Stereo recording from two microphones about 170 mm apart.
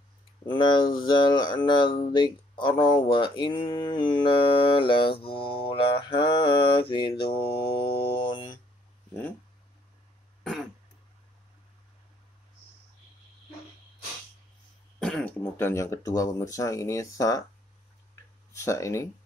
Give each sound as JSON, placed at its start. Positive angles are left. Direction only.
{"t": 0.5, "sound": "speech", "side_deg": 30}
{"t": 7.3, "sound": "mantra", "side_deg": 65}
{"t": 7.6, "sound": "organ", "side_deg": 35}
{"t": 15.0, "sound": "speech", "side_deg": 5}
{"t": 18.5, "sound": "speech", "side_deg": 15}